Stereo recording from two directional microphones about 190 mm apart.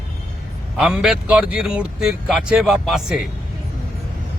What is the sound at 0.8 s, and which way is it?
A man's voice, 5° right (ahead or behind).